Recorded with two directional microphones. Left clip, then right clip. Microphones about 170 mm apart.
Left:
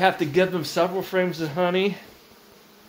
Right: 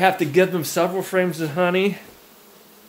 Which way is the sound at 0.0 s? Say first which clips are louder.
Right 3 dB; 15° right (ahead or behind).